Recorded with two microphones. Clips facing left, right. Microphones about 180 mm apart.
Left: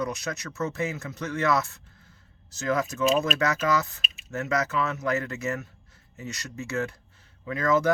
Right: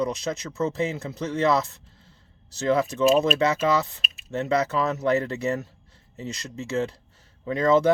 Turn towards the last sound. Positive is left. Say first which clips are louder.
# right 4 dB
turn(degrees=-30)  # may be behind; listen again after turning